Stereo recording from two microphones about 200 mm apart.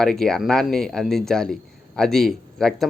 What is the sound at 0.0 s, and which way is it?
Speech, 5° left (ahead or behind).